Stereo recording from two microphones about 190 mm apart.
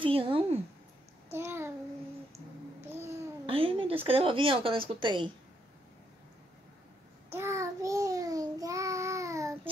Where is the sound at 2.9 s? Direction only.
15° right (ahead or behind).